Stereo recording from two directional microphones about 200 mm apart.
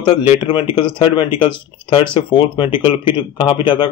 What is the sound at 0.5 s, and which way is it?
A man's voice, 25° left (ahead or behind).